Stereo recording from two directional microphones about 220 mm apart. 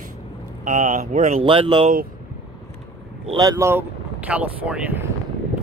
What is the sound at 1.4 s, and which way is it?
Speech, 25° right (ahead or behind).